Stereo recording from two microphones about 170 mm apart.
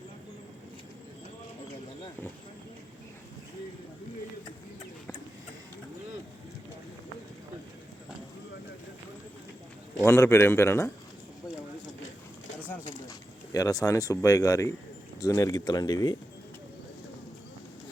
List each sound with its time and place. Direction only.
10.0 s a man's voice: 15° left (ahead or behind)
12.5 s a sound: 10° left (ahead or behind)
13.1 s speech: 20° left (ahead or behind)